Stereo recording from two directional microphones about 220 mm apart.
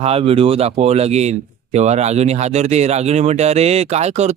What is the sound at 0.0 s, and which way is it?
Speech, 25° right (ahead or behind).